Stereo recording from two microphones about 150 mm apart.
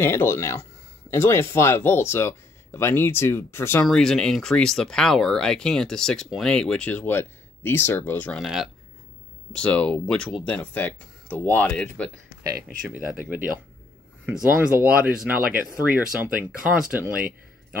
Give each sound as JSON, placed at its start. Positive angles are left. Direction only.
{"t": 0.0, "sound": "speech", "side_deg": 15}
{"t": 3.8, "sound": "speech", "side_deg": 5}
{"t": 9.5, "sound": "speech", "side_deg": 5}
{"t": 12.6, "sound": "speech", "side_deg": -10}